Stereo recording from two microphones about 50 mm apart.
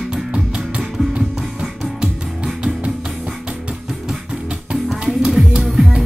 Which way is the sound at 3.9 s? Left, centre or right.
Centre.